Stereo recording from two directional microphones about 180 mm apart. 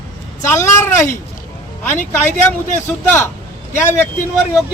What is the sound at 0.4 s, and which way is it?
Speech, 15° left (ahead or behind).